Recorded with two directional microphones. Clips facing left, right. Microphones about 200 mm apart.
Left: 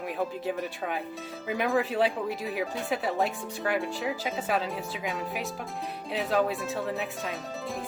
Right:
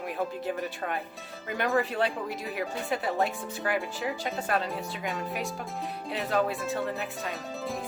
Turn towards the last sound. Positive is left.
turn(degrees=0)  # may be behind; listen again after turning